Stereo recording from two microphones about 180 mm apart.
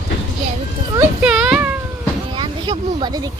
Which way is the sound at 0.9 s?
5° right (ahead or behind).